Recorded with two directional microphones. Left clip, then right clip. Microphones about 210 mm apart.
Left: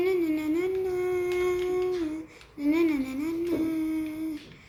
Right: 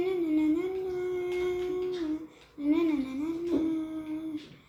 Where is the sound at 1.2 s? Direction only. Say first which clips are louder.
Left 4 dB; 40° left (ahead or behind).